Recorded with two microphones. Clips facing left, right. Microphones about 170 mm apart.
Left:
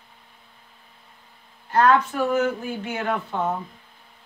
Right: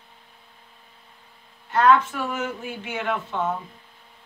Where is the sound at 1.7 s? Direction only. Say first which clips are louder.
Even; 40° left (ahead or behind).